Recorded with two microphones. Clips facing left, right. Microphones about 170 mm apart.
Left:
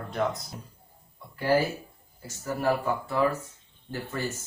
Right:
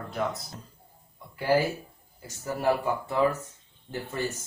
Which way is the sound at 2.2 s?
15° right (ahead or behind).